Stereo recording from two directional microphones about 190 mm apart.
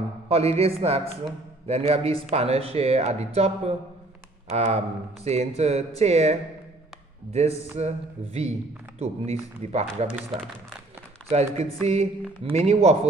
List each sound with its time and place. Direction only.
0.3 s a man's voice: 30° right (ahead or behind)
7.3 s a man's voice: 35° right (ahead or behind)
11.2 s a man's voice: 35° right (ahead or behind)